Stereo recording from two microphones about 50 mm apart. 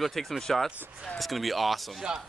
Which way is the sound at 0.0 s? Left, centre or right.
Centre.